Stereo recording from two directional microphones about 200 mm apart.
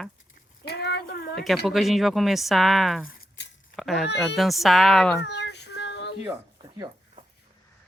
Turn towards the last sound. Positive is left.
turn(degrees=-15)  # may be behind; listen again after turning